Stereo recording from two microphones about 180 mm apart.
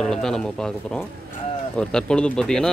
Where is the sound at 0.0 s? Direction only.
5° left (ahead or behind).